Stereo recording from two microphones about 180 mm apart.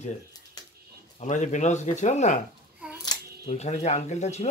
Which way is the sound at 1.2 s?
40° left (ahead or behind).